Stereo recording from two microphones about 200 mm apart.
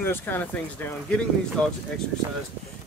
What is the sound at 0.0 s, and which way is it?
Speech, 10° left (ahead or behind).